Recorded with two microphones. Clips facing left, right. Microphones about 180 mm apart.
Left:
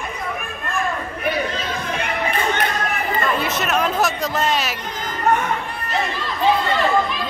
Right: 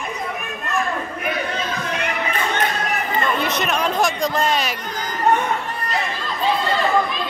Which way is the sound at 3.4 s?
5° left (ahead or behind).